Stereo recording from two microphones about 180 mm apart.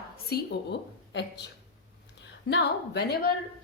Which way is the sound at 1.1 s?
75° left (ahead or behind).